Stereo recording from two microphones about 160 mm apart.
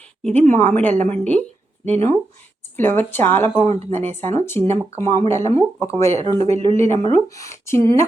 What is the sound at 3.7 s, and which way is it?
Speech, 40° right (ahead or behind).